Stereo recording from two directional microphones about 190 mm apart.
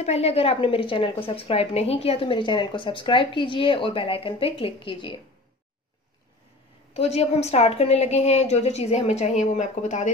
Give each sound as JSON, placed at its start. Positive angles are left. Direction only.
{"t": 0.0, "sound": "a woman's voice", "side_deg": 35}
{"t": 6.9, "sound": "a woman's voice", "side_deg": 35}